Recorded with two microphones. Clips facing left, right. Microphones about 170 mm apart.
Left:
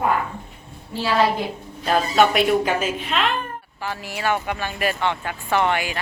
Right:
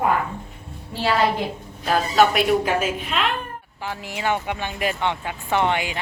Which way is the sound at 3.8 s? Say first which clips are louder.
Left 1 dB; 15° right (ahead or behind).